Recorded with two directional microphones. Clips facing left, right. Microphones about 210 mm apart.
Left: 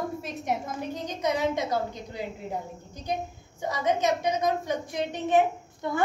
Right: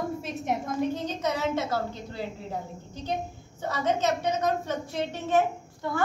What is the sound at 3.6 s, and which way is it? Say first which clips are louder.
A woman's voice: left 1 dB; 15° left (ahead or behind).